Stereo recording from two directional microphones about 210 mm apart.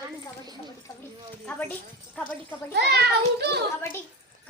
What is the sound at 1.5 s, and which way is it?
Speech, 5° left (ahead or behind).